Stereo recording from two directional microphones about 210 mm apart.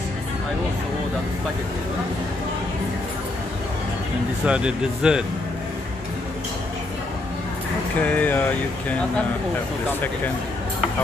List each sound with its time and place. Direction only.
4.5 s speech: 5° right (ahead or behind)
8.0 s speech: 10° left (ahead or behind)